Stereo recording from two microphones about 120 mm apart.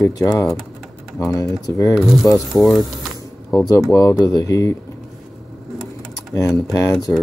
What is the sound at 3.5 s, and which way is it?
Speech, 25° left (ahead or behind).